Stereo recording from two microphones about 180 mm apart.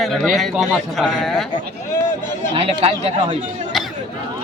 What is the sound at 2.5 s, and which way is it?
Speech, 30° right (ahead or behind).